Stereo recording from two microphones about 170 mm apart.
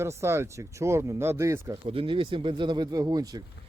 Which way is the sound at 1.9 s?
30° right (ahead or behind).